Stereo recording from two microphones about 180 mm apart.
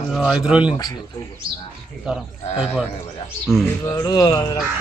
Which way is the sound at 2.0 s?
5° right (ahead or behind).